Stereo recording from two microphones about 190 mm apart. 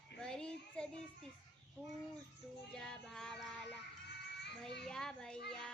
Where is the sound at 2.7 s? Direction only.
5° left (ahead or behind).